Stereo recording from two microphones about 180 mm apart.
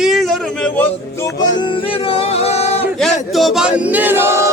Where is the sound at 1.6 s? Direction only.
30° left (ahead or behind).